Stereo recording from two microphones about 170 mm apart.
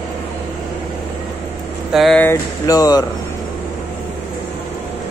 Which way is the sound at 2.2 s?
20° left (ahead or behind).